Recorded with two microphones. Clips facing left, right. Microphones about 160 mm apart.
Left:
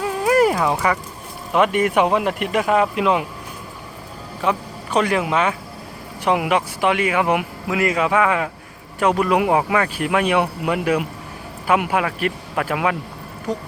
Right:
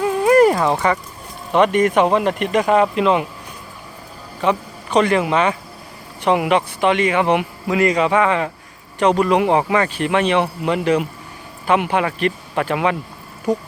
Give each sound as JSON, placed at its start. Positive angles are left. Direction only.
{"t": 0.0, "sound": "a sound", "side_deg": 0}
{"t": 1.5, "sound": "speech", "side_deg": 5}
{"t": 4.4, "sound": "speech", "side_deg": 5}